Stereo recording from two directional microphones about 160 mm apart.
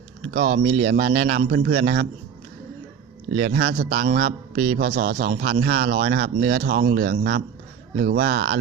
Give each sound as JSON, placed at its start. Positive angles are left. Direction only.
{"t": 0.3, "sound": "speech", "side_deg": -70}
{"t": 3.5, "sound": "a man's voice", "side_deg": -85}
{"t": 7.9, "sound": "speech", "side_deg": -70}